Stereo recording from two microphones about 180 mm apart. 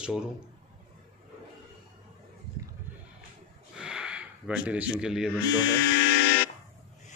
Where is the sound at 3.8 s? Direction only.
5° right (ahead or behind).